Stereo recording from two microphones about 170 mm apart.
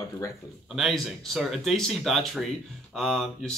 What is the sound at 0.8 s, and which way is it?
Speech, centre (ahead or behind).